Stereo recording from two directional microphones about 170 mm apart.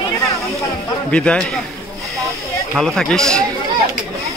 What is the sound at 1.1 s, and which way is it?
Speech, 5° left (ahead or behind).